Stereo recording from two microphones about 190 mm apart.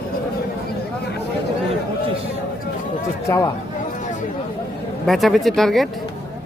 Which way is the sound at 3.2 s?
15° left (ahead or behind).